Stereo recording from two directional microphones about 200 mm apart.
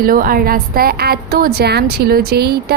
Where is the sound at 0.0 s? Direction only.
45° right (ahead or behind).